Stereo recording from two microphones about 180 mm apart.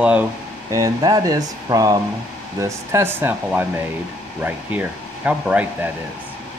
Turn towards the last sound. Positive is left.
turn(degrees=-10)  # may be behind; listen again after turning